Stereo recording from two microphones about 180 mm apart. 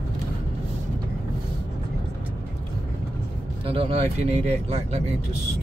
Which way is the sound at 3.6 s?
30° right (ahead or behind).